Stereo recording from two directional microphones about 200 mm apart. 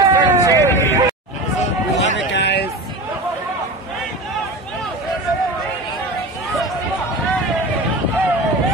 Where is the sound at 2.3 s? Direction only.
60° left (ahead or behind).